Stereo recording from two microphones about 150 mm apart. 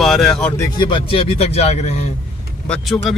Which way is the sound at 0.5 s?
30° left (ahead or behind).